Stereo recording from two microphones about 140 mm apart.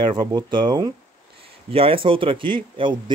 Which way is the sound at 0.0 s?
35° right (ahead or behind).